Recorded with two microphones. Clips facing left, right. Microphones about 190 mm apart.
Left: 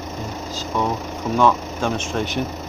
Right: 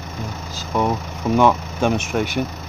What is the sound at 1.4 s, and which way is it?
Speech, 15° right (ahead or behind).